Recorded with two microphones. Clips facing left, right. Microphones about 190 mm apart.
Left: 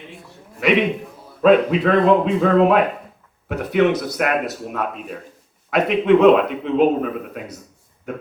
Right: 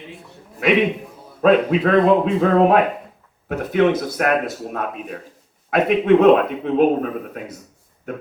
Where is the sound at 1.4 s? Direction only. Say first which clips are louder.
Left 1 dB; 50° right (ahead or behind).